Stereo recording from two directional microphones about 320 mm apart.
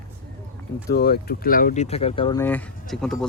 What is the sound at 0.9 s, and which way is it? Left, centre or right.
Speech, left.